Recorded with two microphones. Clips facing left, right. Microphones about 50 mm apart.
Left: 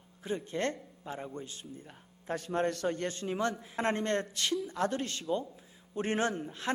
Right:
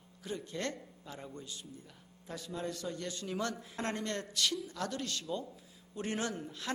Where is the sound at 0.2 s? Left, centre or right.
Left.